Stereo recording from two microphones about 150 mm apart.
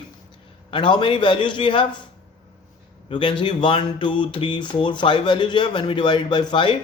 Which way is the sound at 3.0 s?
35° left (ahead or behind).